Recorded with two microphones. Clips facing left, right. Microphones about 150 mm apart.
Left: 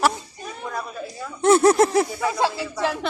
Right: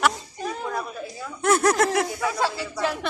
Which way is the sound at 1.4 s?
30° left (ahead or behind).